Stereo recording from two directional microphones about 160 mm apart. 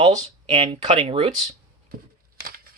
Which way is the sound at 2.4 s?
70° right (ahead or behind).